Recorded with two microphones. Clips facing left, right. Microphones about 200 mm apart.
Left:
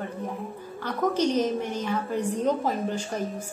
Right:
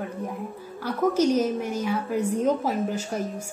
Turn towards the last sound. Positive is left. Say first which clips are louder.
# right 1 dB
turn(degrees=-10)  # may be behind; listen again after turning